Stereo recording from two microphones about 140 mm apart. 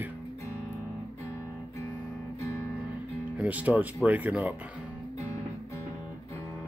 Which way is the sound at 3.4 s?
10° right (ahead or behind).